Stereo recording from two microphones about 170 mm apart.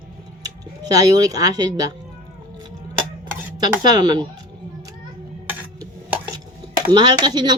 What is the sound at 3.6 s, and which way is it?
Speech, 25° right (ahead or behind).